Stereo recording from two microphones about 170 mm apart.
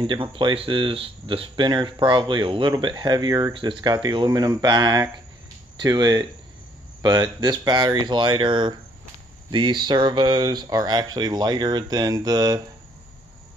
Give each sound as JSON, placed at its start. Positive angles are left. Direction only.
{"t": 0.0, "sound": "speech", "side_deg": -30}